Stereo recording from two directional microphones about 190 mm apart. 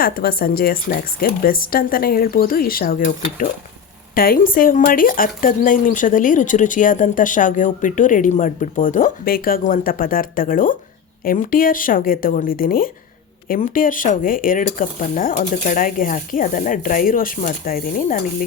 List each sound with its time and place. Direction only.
0.0 s speech: 55° left (ahead or behind)